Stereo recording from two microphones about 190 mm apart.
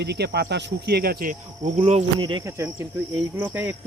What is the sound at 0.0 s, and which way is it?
Speech, 60° right (ahead or behind).